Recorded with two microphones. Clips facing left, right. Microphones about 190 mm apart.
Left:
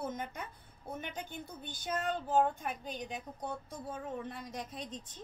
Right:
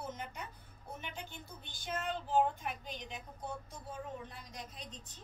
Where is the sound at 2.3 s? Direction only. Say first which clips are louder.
Left 1 dB; 50° left (ahead or behind).